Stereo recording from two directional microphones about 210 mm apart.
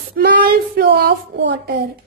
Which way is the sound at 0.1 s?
45° right (ahead or behind).